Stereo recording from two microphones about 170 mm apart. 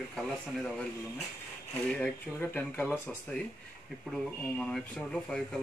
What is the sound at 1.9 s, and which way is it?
Speech, 10° left (ahead or behind).